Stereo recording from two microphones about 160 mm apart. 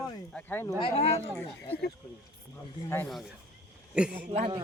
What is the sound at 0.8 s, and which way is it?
Speech, 35° left (ahead or behind).